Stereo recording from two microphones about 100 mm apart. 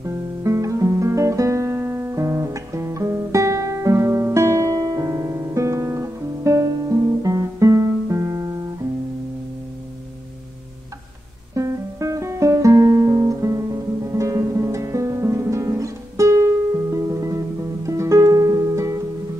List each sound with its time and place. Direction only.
0.0 s guitar: 30° right (ahead or behind)
11.5 s music: 35° right (ahead or behind)